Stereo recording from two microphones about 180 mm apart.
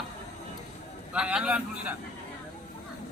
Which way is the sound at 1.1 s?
5° right (ahead or behind).